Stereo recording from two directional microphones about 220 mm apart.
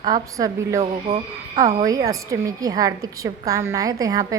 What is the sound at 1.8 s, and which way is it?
A woman's voice, 15° right (ahead or behind).